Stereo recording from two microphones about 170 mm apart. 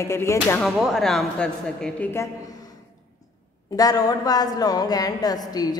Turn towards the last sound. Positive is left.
turn(degrees=20)  # may be behind; listen again after turning